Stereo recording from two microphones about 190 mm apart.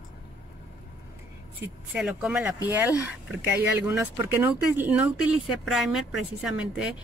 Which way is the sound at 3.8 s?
10° right (ahead or behind).